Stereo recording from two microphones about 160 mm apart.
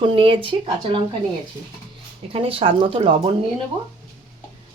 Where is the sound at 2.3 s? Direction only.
35° right (ahead or behind).